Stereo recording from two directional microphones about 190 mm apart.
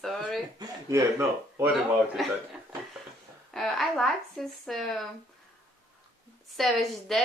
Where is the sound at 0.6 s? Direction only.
15° right (ahead or behind).